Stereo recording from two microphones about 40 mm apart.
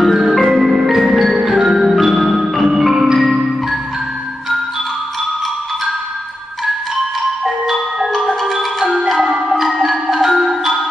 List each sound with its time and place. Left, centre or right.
0.0 s music: centre
7.4 s marimba: centre
8.5 s music: centre
9.7 s marimba: centre
10.5 s music: centre